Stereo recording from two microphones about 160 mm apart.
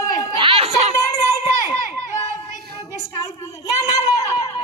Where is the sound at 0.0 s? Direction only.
20° left (ahead or behind).